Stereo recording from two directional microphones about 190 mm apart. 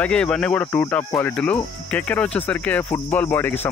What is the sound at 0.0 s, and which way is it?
Speech, 5° left (ahead or behind).